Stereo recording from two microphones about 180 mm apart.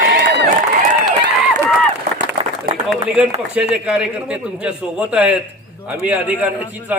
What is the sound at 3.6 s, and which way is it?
A man's voice, 5° right (ahead or behind).